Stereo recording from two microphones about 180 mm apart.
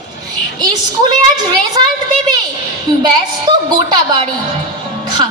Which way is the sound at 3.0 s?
25° right (ahead or behind).